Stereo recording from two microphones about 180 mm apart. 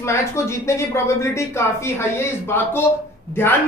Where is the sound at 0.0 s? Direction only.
15° left (ahead or behind).